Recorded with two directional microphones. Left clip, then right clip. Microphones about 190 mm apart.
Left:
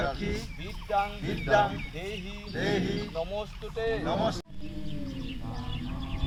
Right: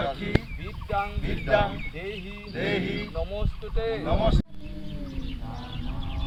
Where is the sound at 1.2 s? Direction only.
25° right (ahead or behind).